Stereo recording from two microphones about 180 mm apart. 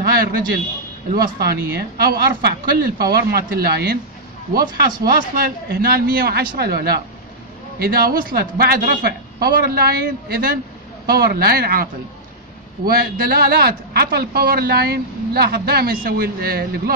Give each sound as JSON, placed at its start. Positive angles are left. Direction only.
{"t": 0.0, "sound": "a sound", "side_deg": -55}
{"t": 1.1, "sound": "a man's voice", "side_deg": -55}
{"t": 5.0, "sound": "a man's voice", "side_deg": -55}